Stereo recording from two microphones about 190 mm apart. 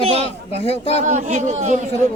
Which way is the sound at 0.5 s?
35° left (ahead or behind).